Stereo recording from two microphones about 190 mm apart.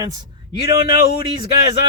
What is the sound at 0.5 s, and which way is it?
Speech, 55° left (ahead or behind).